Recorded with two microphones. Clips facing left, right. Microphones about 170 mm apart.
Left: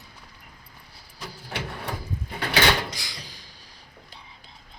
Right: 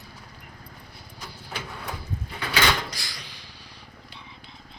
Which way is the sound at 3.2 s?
40° left (ahead or behind).